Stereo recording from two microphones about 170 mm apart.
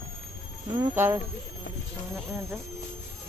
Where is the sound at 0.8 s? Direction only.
15° right (ahead or behind).